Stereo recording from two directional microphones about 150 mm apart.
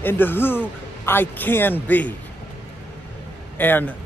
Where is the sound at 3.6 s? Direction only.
10° left (ahead or behind).